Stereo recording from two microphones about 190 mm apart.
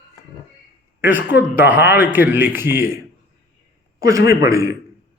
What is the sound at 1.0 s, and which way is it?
A man's voice, 10° right (ahead or behind).